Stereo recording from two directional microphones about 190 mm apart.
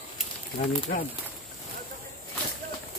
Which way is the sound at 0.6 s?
45° left (ahead or behind).